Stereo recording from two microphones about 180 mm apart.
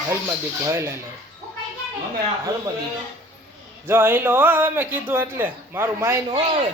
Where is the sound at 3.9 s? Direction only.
15° right (ahead or behind).